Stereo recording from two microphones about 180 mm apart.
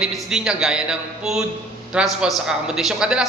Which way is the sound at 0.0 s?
5° right (ahead or behind).